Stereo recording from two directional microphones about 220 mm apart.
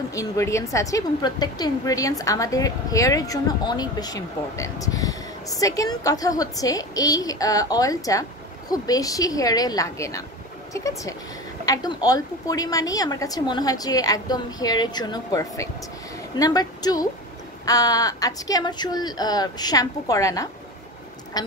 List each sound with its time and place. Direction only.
0.1 s a woman's voice: 15° left (ahead or behind)